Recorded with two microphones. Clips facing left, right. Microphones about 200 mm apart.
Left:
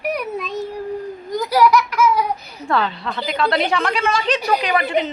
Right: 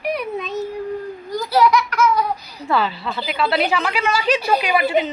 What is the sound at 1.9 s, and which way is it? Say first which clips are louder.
Speech: left 1 dB; 10° left (ahead or behind).